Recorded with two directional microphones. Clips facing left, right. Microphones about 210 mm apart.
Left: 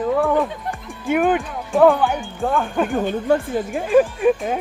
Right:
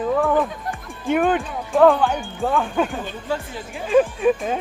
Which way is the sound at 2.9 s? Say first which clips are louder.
Left 8 dB; 55° left (ahead or behind).